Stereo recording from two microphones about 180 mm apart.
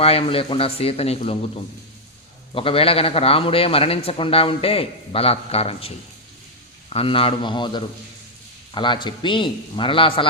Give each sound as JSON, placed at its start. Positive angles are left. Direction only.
{"t": 0.0, "sound": "a man's voice", "side_deg": 30}
{"t": 6.9, "sound": "a man's voice", "side_deg": 30}